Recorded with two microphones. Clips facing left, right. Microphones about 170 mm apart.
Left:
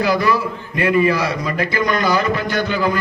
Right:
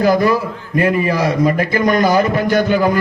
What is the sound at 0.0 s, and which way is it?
A man's voice, 45° right (ahead or behind).